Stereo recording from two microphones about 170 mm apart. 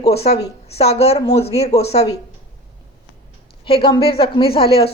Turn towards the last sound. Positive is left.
turn(degrees=35)  # may be behind; listen again after turning